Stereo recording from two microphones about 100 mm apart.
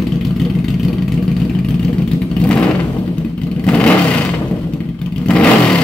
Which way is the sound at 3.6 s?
10° left (ahead or behind).